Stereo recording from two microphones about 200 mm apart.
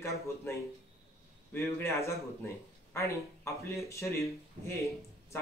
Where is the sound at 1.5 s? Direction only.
15° left (ahead or behind).